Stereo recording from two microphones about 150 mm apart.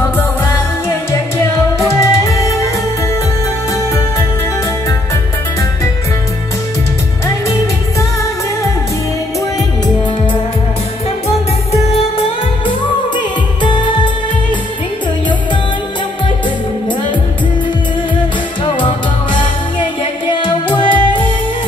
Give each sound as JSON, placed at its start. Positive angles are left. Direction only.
{"t": 1.9, "sound": "music", "side_deg": 20}
{"t": 11.2, "sound": "music", "side_deg": 40}
{"t": 20.0, "sound": "music", "side_deg": 35}